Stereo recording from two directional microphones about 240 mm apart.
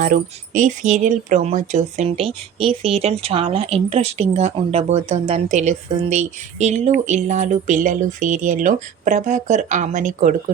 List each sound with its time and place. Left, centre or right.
0.0 s speech: right